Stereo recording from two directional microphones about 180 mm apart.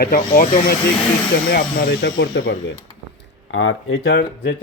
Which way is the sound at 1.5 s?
55° left (ahead or behind).